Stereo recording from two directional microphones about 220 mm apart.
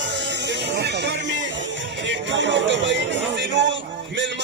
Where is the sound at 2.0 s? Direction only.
55° right (ahead or behind).